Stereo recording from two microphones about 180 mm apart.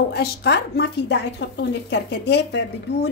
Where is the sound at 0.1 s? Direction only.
65° left (ahead or behind).